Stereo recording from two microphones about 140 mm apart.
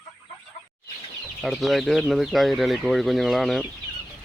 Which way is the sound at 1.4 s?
Centre (ahead or behind).